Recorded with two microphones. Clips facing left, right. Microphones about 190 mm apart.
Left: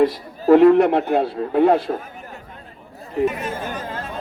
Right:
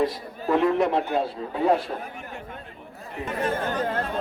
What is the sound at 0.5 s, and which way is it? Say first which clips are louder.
Speech: left 9 dB; 65° left (ahead or behind).